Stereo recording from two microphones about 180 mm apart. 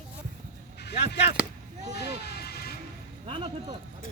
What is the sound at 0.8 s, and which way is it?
Speech, 65° left (ahead or behind).